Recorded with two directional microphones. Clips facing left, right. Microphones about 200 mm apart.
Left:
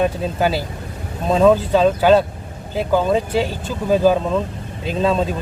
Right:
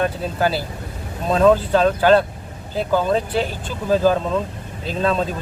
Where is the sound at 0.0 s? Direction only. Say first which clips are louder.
Left 2 dB; 15° left (ahead or behind).